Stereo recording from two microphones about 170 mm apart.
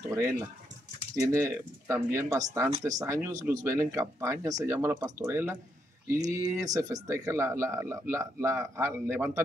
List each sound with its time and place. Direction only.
0.1 s speech: 15° right (ahead or behind)